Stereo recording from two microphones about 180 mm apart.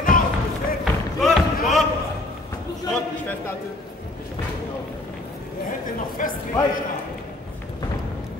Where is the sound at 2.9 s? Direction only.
10° left (ahead or behind).